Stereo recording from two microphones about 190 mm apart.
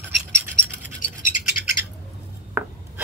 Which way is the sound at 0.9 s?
45° left (ahead or behind).